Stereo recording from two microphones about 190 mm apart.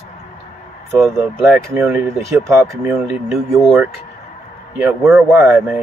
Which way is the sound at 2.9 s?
5° right (ahead or behind).